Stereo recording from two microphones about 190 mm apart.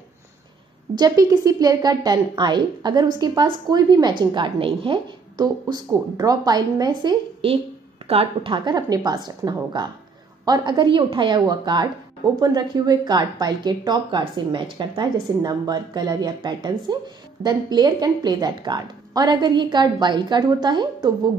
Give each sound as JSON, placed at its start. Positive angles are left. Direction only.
{"t": 0.9, "sound": "speech", "side_deg": -20}